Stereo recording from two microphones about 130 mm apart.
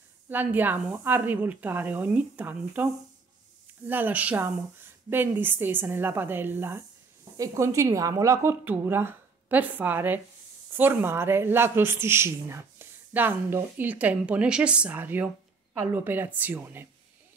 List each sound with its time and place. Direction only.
0.3 s a woman's voice: 15° right (ahead or behind)